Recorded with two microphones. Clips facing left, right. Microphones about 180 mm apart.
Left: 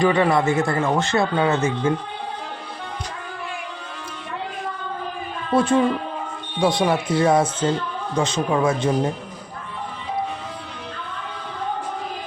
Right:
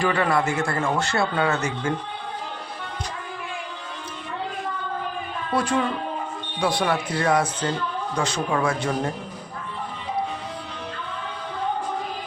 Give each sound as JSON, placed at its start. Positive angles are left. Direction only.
{"t": 0.0, "sound": "a man's voice", "side_deg": 20}
{"t": 5.5, "sound": "a man's voice", "side_deg": 25}